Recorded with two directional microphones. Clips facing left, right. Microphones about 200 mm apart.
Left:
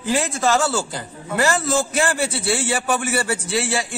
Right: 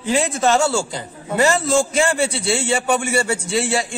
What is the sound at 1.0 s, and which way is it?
Speech, 20° right (ahead or behind).